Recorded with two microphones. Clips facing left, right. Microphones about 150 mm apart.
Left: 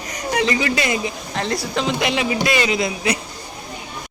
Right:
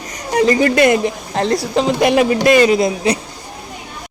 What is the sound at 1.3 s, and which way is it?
Speech, 35° right (ahead or behind).